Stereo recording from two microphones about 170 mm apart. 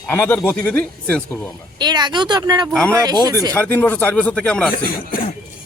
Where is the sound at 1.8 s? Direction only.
25° right (ahead or behind).